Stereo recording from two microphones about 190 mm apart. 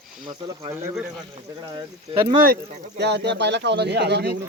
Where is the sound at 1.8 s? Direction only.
25° right (ahead or behind).